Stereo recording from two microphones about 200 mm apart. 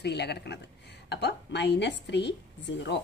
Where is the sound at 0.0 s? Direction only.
55° left (ahead or behind).